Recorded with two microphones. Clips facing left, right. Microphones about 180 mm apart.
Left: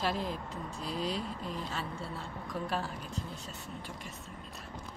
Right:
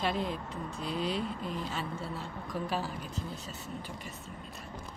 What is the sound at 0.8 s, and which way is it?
Speech, 35° left (ahead or behind).